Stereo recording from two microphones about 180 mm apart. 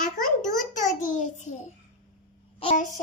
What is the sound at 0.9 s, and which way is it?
Speech, 45° left (ahead or behind).